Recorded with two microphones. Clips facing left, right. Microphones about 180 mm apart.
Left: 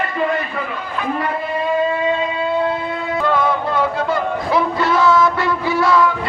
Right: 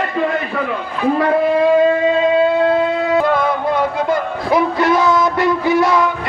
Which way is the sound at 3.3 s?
15° right (ahead or behind).